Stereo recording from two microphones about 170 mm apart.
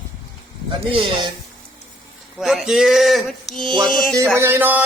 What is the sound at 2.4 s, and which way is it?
Speech, centre (ahead or behind).